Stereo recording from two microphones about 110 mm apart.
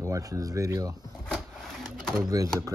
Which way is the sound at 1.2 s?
5° left (ahead or behind).